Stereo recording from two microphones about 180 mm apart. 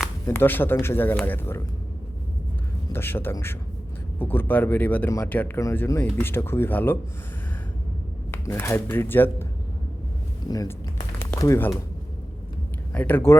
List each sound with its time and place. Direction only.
0.3 s speech: 10° left (ahead or behind)
2.9 s speech: 10° left (ahead or behind)
8.4 s speech: 15° left (ahead or behind)
12.9 s speech: 10° left (ahead or behind)